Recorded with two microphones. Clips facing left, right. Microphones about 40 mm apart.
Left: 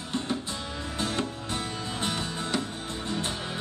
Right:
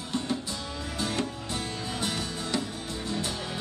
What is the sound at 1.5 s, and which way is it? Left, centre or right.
Music, left.